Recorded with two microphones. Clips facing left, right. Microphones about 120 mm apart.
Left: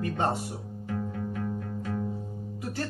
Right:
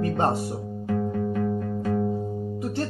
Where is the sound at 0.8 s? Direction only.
90° right.